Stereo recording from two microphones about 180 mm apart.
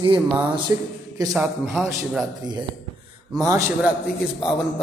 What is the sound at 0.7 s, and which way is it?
Speech, 15° right (ahead or behind).